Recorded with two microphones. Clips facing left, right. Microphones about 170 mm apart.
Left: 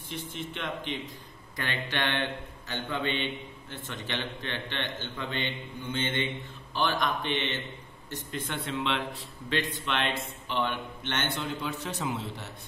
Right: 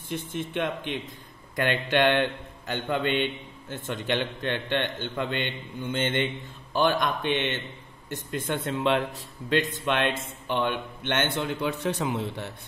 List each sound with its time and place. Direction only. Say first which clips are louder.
0.1 s a man's voice: right 7 dB; 50° right (ahead or behind)